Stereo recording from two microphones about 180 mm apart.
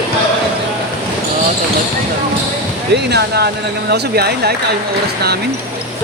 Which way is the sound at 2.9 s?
65° right (ahead or behind).